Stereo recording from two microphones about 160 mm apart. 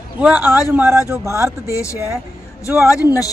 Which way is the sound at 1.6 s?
20° left (ahead or behind).